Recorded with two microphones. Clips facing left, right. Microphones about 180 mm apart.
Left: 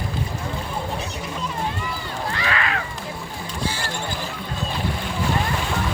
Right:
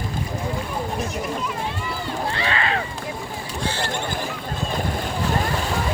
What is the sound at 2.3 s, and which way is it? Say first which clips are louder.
Run: even; 30° right (ahead or behind).